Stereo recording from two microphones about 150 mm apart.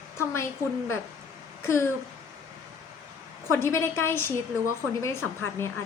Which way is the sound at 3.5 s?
20° left (ahead or behind).